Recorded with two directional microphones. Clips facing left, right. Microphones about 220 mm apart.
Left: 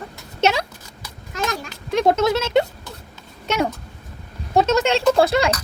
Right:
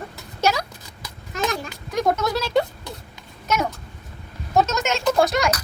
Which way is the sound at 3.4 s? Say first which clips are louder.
Left 2 dB; 30° left (ahead or behind).